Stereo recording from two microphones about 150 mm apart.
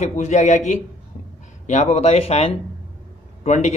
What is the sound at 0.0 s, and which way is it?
Speech, 50° left (ahead or behind).